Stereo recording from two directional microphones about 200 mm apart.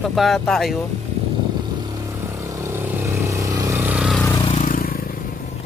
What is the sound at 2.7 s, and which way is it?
Vehicle, 10° right (ahead or behind).